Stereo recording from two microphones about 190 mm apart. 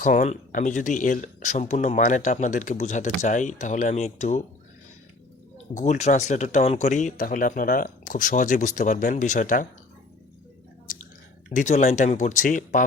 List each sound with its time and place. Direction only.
0.0 s speech: 40° left (ahead or behind)
5.7 s speech: 40° left (ahead or behind)
11.5 s speech: 40° left (ahead or behind)